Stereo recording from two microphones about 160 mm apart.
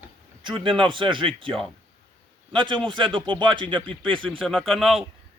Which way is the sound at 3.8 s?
5° left (ahead or behind).